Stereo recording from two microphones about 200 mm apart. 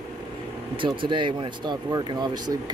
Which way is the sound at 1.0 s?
25° right (ahead or behind).